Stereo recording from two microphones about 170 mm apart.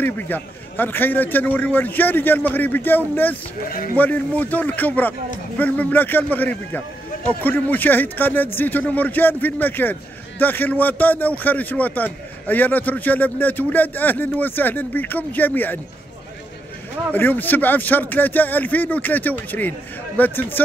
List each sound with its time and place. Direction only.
0.0 s a man's voice: 10° left (ahead or behind)
3.6 s speech: 55° left (ahead or behind)
4.0 s a man's voice: 10° left (ahead or behind)
17.1 s a man's voice: 10° left (ahead or behind)